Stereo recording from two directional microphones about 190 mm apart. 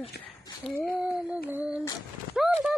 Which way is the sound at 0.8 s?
5° right (ahead or behind).